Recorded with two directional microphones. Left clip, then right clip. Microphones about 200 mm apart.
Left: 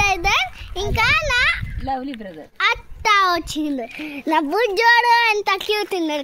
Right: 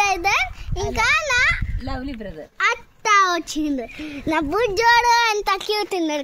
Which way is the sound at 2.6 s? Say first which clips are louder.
Left 2 dB; 25° left (ahead or behind).